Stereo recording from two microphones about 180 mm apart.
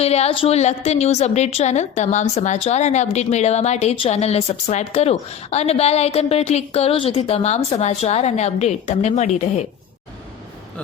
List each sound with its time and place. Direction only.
0.0 s a woman's voice: 35° left (ahead or behind)